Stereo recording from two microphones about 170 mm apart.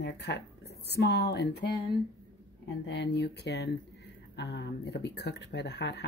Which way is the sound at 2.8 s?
90° left.